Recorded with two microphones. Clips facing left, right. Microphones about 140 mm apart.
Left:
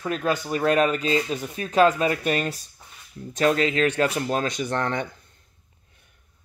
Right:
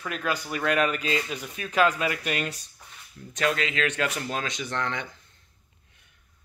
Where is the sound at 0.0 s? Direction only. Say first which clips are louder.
Left 5 dB; 30° left (ahead or behind); by 5.0 s 45° left (ahead or behind).